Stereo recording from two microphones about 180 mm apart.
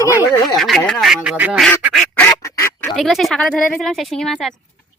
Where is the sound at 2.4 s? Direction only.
15° left (ahead or behind).